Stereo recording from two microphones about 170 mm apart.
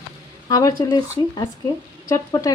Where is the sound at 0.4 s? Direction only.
20° left (ahead or behind).